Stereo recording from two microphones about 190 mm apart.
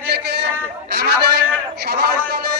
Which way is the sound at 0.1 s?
65° right (ahead or behind).